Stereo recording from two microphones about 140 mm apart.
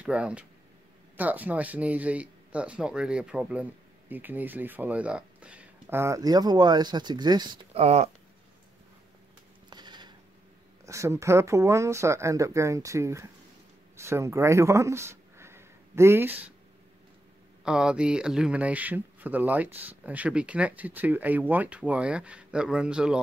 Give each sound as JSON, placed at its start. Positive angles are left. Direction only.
{"t": 0.0, "sound": "speech", "side_deg": -5}
{"t": 7.7, "sound": "speech", "side_deg": -50}
{"t": 9.7, "sound": "a sound", "side_deg": -30}
{"t": 10.9, "sound": "speech", "side_deg": -20}
{"t": 17.6, "sound": "speech", "side_deg": -5}